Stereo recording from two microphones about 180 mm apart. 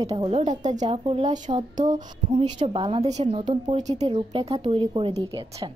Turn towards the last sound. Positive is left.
turn(degrees=-30)  # may be behind; listen again after turning